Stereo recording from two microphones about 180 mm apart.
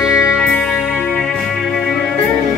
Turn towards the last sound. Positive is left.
turn(degrees=15)  # may be behind; listen again after turning